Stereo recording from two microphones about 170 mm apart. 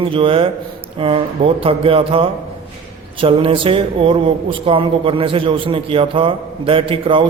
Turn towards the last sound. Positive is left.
turn(degrees=-30)  # may be behind; listen again after turning